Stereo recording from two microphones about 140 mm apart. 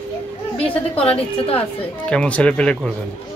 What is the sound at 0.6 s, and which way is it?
A woman's voice, 45° left (ahead or behind).